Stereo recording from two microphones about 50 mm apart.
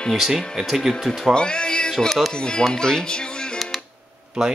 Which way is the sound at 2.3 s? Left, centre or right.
Centre.